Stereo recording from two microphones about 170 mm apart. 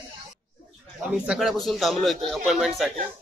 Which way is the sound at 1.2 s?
5° right (ahead or behind).